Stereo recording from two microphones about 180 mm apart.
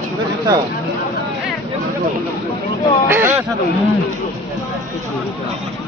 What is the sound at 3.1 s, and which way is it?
Speech, 10° right (ahead or behind).